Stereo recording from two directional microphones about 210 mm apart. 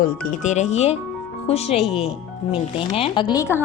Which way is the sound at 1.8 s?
Centre (ahead or behind).